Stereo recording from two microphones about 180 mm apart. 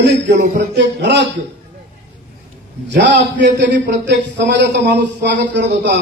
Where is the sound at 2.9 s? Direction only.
70° right (ahead or behind).